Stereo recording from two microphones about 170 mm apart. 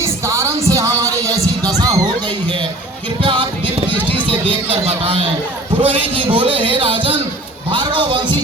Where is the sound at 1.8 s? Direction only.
20° right (ahead or behind).